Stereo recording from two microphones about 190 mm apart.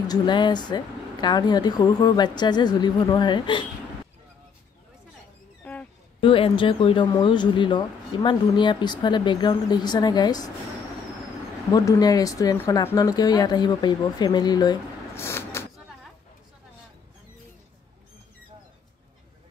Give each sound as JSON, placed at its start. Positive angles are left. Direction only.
{"t": 0.1, "sound": "speech", "side_deg": 25}
{"t": 5.6, "sound": "a sound", "side_deg": 10}
{"t": 6.2, "sound": "speech", "side_deg": 30}
{"t": 11.7, "sound": "speech", "side_deg": 20}